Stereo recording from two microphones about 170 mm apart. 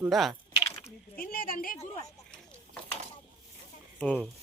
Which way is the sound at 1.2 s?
60° left (ahead or behind).